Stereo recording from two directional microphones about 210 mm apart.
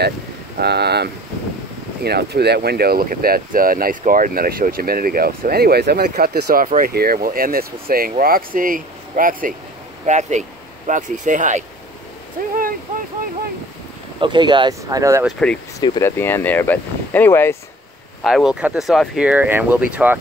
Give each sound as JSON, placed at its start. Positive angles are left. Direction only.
{"t": 0.6, "sound": "speech", "side_deg": -50}
{"t": 14.2, "sound": "speech", "side_deg": -20}
{"t": 15.2, "sound": "speech", "side_deg": 5}
{"t": 15.8, "sound": "speech", "side_deg": 15}
{"t": 18.2, "sound": "speech", "side_deg": 0}